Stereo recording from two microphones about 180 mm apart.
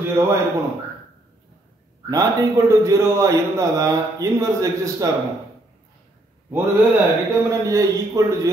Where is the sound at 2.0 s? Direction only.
20° right (ahead or behind).